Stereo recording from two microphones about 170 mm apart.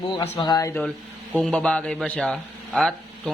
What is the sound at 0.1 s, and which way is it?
Speech, 25° left (ahead or behind).